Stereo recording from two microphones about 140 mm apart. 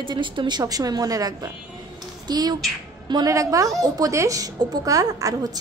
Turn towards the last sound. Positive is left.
turn(degrees=-25)  # may be behind; listen again after turning